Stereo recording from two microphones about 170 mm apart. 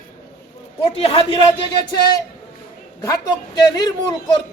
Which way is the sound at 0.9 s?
35° left (ahead or behind).